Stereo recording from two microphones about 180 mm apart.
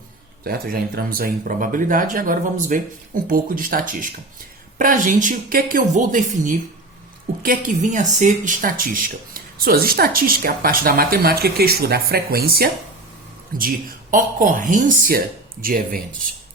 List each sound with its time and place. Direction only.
0.4 s speech: 55° right (ahead or behind)